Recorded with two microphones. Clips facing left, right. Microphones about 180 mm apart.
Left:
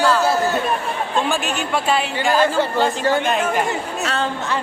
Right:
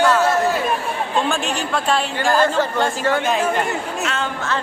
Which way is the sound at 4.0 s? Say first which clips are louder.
Left 3 dB; 35° left (ahead or behind).